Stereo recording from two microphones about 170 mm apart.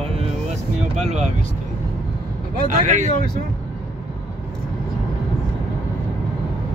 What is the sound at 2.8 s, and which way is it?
Speech, 45° right (ahead or behind).